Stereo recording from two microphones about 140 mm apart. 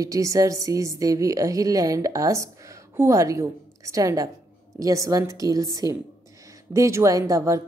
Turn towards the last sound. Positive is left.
turn(degrees=-25)  # may be behind; listen again after turning